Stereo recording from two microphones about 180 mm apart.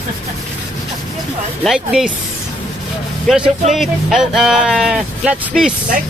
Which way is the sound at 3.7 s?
Centre (ahead or behind).